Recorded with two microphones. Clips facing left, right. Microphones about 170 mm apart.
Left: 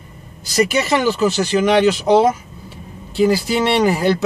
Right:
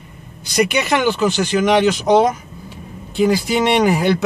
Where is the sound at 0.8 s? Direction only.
40° left (ahead or behind).